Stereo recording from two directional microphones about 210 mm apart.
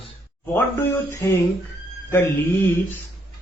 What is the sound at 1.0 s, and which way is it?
Speech, 10° left (ahead or behind).